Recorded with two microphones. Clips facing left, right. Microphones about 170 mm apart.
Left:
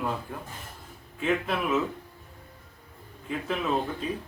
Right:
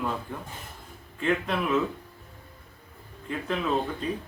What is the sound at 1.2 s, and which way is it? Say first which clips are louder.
Speech: right 1 dB; 5° left (ahead or behind).